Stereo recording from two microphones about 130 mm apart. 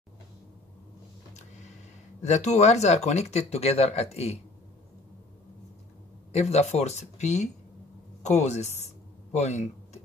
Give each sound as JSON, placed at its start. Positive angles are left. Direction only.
{"t": 2.2, "sound": "speech", "side_deg": 60}
{"t": 6.3, "sound": "speech", "side_deg": 55}